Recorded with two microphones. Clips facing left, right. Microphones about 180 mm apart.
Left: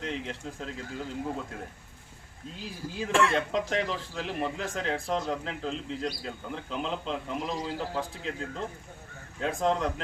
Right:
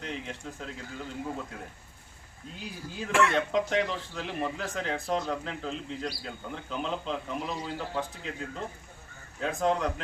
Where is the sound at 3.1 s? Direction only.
30° left (ahead or behind).